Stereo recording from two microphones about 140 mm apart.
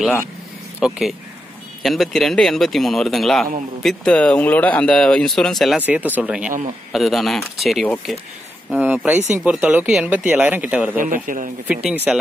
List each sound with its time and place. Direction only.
0.7 s speech: 5° right (ahead or behind)
5.8 s speech: 10° right (ahead or behind)
8.7 s speech: 10° right (ahead or behind)
11.0 s a man's voice: 70° right (ahead or behind)
11.6 s speech: 10° right (ahead or behind)